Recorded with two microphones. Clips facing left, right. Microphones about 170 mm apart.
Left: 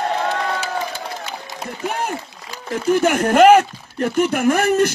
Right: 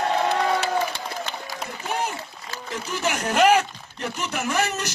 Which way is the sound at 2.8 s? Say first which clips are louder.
Left 11 dB; 55° left (ahead or behind).